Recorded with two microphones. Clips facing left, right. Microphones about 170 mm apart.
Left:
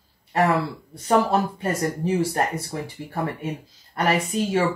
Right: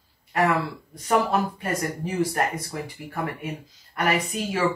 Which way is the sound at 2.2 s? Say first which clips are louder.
Left 1 dB; 30° left (ahead or behind).